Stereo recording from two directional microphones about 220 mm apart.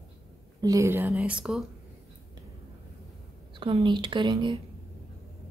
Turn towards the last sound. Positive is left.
turn(degrees=-20)  # may be behind; listen again after turning